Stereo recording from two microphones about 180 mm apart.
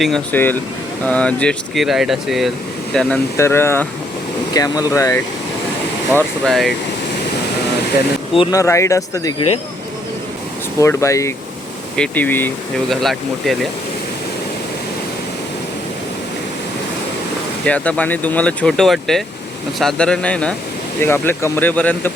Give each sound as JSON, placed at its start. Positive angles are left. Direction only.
{"t": 0.0, "sound": "speech", "side_deg": 5}
{"t": 6.1, "sound": "speech", "side_deg": 0}
{"t": 8.3, "sound": "speech", "side_deg": 30}
{"t": 8.5, "sound": "speech", "side_deg": 15}
{"t": 10.8, "sound": "speech", "side_deg": 15}
{"t": 17.7, "sound": "speech", "side_deg": 10}